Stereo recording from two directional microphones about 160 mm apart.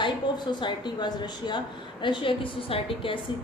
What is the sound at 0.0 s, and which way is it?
A woman's voice, 30° left (ahead or behind).